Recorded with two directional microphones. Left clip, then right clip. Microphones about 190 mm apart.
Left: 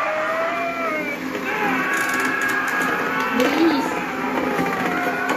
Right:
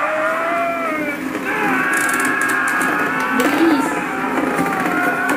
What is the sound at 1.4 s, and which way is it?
Music, 25° right (ahead or behind).